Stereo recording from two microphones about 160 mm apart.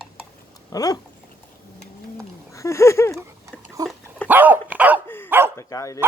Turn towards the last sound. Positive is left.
turn(degrees=20)  # may be behind; listen again after turning